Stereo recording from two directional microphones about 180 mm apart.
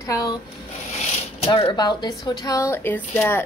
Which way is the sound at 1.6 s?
30° left (ahead or behind).